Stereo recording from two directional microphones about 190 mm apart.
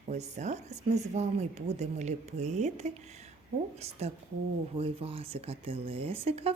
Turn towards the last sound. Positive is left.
turn(degrees=-30)  # may be behind; listen again after turning